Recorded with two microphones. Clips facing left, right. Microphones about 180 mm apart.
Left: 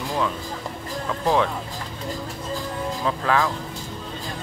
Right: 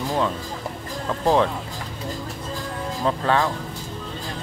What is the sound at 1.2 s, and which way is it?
Speech, 30° right (ahead or behind).